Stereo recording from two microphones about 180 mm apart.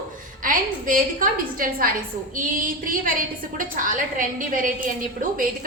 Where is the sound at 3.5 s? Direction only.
50° right (ahead or behind).